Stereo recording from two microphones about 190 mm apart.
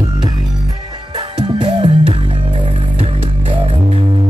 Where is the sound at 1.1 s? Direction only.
25° right (ahead or behind).